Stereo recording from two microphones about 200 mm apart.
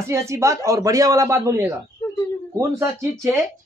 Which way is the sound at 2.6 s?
15° right (ahead or behind).